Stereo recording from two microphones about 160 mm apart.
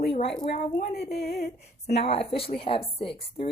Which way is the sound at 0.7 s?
80° left.